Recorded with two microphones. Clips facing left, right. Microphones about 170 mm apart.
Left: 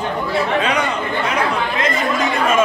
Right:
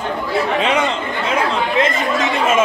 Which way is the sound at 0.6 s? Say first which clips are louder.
Right 2 dB; 25° right (ahead or behind).